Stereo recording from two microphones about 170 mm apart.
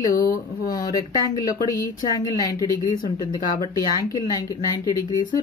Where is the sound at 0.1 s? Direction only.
55° left (ahead or behind).